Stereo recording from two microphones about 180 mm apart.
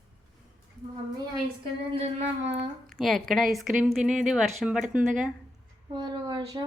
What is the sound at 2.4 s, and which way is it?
Speech, 35° right (ahead or behind).